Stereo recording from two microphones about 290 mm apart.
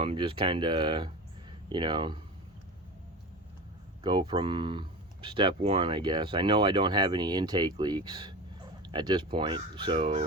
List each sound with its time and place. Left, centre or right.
0.0 s speech: centre
4.0 s speech: centre